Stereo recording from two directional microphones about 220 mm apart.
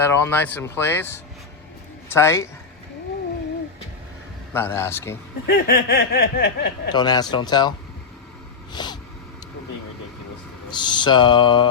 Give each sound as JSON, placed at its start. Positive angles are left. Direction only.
{"t": 0.0, "sound": "speech", "side_deg": 10}
{"t": 4.5, "sound": "speech", "side_deg": 10}
{"t": 5.5, "sound": "speech", "side_deg": 45}
{"t": 6.9, "sound": "mantra", "side_deg": 20}
{"t": 8.7, "sound": "a sound", "side_deg": 20}
{"t": 10.7, "sound": "mantra", "side_deg": 20}